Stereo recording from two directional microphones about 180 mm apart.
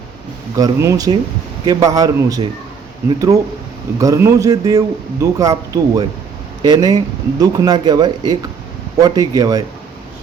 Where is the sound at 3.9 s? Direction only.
20° right (ahead or behind).